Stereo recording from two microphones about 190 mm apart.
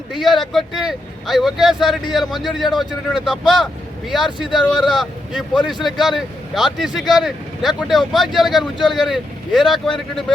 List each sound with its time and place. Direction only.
0.1 s speech: centre (ahead or behind)